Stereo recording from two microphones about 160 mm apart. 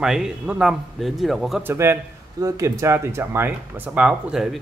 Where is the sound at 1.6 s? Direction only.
15° right (ahead or behind).